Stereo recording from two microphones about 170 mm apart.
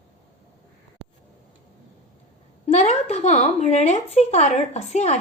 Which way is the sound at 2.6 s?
40° left (ahead or behind).